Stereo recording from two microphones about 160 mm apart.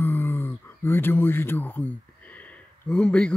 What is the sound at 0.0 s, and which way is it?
Speech, 15° left (ahead or behind).